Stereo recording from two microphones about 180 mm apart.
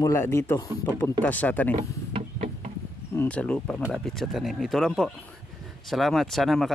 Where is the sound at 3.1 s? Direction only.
10° left (ahead or behind).